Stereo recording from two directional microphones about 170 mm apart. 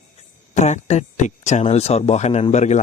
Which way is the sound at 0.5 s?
45° left (ahead or behind).